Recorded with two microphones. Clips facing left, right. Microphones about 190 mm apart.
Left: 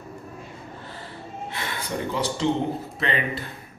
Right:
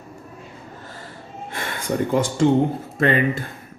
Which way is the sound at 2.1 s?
50° right (ahead or behind).